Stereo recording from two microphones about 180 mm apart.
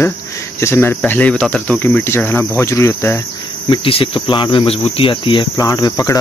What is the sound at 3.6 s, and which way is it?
Speech, 30° left (ahead or behind).